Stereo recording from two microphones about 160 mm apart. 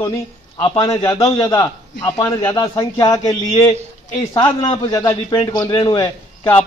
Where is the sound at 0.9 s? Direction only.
20° left (ahead or behind).